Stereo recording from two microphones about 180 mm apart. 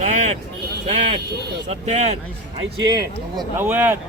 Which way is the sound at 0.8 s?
35° right (ahead or behind).